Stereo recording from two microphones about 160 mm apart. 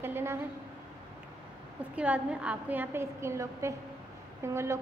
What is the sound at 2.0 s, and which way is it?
A woman's voice, 10° right (ahead or behind).